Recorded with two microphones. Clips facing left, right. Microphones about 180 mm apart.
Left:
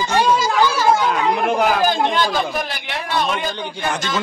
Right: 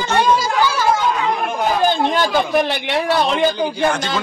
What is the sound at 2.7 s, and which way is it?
Speech, 30° right (ahead or behind).